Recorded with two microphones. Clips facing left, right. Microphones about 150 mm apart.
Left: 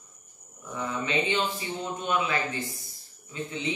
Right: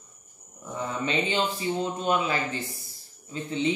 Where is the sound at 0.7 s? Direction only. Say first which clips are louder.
Right 1 dB; 30° right (ahead or behind).